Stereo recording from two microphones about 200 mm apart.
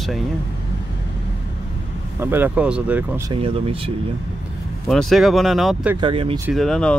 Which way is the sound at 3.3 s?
25° right (ahead or behind).